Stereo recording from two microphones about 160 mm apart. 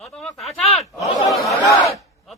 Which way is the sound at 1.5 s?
20° left (ahead or behind).